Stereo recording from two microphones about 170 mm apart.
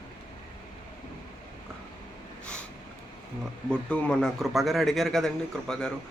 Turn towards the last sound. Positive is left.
turn(degrees=5)  # may be behind; listen again after turning